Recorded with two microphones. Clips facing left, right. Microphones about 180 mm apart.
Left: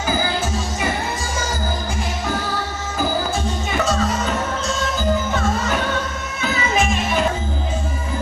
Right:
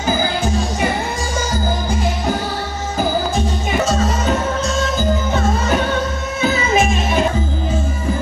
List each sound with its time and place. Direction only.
3.3 s music: 20° right (ahead or behind)
6.7 s music: 20° right (ahead or behind)